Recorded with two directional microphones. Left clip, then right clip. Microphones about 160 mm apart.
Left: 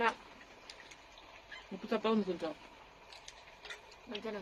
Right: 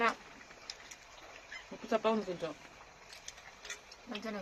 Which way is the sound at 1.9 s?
35° left (ahead or behind).